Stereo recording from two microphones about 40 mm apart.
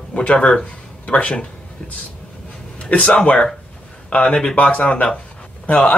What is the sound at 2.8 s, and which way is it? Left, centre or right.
Speech, left.